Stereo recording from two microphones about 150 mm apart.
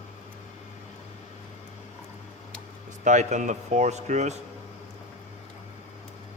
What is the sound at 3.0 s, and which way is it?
A man's voice, 50° right (ahead or behind).